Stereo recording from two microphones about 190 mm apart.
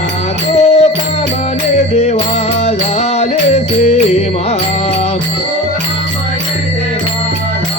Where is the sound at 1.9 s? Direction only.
35° left (ahead or behind).